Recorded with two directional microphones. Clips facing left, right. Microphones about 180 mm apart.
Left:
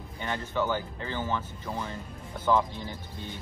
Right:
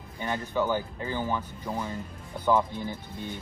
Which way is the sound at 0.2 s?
15° right (ahead or behind).